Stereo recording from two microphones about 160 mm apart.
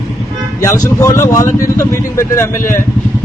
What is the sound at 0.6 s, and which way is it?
A man's voice, 20° left (ahead or behind).